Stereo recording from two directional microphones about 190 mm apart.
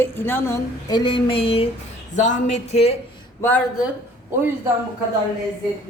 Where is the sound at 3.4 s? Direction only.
10° left (ahead or behind).